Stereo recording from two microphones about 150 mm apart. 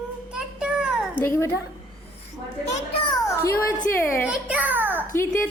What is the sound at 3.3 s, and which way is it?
Speech, 15° left (ahead or behind).